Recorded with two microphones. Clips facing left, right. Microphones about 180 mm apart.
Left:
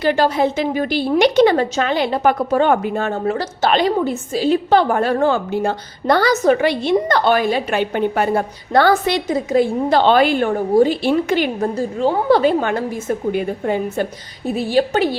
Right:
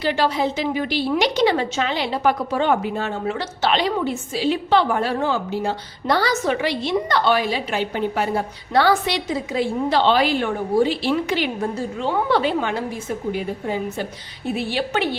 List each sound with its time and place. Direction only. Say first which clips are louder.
0.0 s a woman's voice: left 5 dB; 50° left (ahead or behind)
13.3 s a woman's voice: left 5 dB; 60° left (ahead or behind)
14.4 s a woman's voice: left 7 dB; 40° left (ahead or behind)